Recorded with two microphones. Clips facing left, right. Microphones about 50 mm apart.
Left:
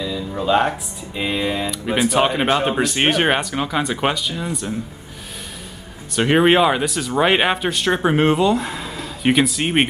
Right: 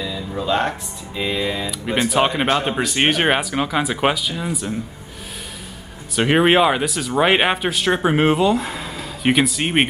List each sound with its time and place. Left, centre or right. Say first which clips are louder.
0.0 s speech: left 2 dB; centre
1.7 s speech: left 2 dB; centre
6.1 s speech: even; centre